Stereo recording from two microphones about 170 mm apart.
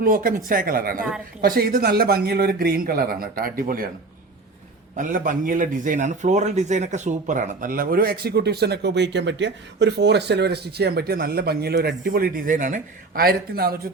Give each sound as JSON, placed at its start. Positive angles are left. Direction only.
{"t": 0.0, "sound": "a man's voice", "side_deg": -55}
{"t": 4.9, "sound": "a man's voice", "side_deg": -50}